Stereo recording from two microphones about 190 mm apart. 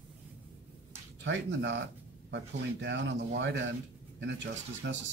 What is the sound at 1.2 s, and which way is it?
Speech, 75° right (ahead or behind).